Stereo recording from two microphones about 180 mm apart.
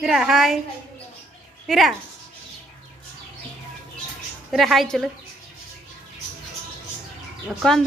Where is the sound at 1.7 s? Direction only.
Centre (ahead or behind).